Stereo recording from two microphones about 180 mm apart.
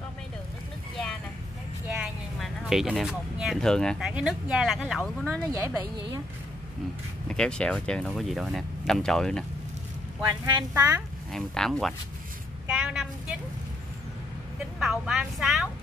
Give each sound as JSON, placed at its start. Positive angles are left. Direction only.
{"t": 2.0, "sound": "music", "side_deg": 0}
{"t": 4.1, "sound": "speech", "side_deg": -5}
{"t": 5.5, "sound": "speech", "side_deg": -15}
{"t": 7.2, "sound": "speech", "side_deg": 5}
{"t": 10.4, "sound": "speech", "side_deg": -20}
{"t": 11.3, "sound": "speech", "side_deg": 5}
{"t": 12.6, "sound": "vehicle", "side_deg": -5}
{"t": 14.8, "sound": "speech", "side_deg": -5}